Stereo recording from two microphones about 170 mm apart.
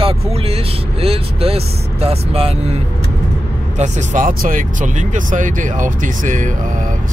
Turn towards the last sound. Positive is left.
turn(degrees=-50)  # may be behind; listen again after turning